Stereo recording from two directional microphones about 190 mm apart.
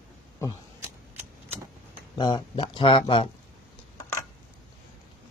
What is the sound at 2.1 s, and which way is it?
Speech, 25° left (ahead or behind).